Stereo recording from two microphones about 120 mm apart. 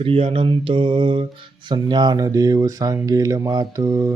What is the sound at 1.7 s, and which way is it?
Speech, 40° right (ahead or behind).